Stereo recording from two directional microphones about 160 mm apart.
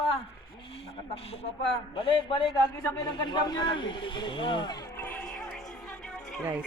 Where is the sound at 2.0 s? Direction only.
30° left (ahead or behind).